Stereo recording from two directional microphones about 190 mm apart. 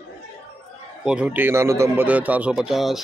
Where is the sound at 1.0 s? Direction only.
5° right (ahead or behind).